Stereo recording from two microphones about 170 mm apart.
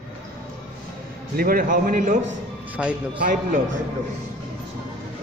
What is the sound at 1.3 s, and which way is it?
Speech, 60° right (ahead or behind).